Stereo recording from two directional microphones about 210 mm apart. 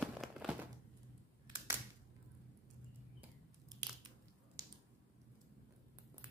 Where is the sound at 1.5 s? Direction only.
15° right (ahead or behind).